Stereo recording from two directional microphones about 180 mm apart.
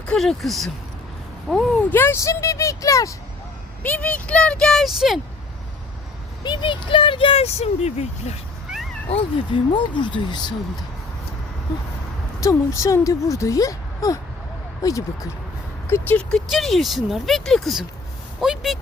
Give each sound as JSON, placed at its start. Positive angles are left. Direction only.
{"t": 0.0, "sound": "speech", "side_deg": 5}
{"t": 6.4, "sound": "speech", "side_deg": 25}
{"t": 8.7, "sound": "cat", "side_deg": 0}
{"t": 9.0, "sound": "speech", "side_deg": 30}
{"t": 12.4, "sound": "speech", "side_deg": 15}